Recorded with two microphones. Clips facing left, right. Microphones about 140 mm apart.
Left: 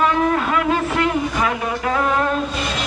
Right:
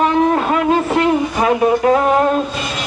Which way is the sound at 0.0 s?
30° right (ahead or behind).